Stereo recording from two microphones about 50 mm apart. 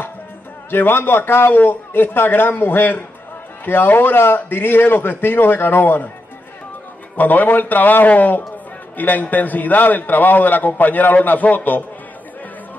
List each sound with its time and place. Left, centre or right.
0.7 s a man's voice: left
7.2 s a man's voice: left